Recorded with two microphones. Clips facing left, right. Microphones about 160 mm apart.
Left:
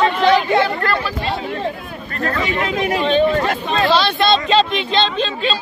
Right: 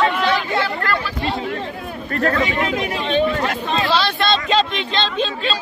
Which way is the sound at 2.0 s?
65° right (ahead or behind).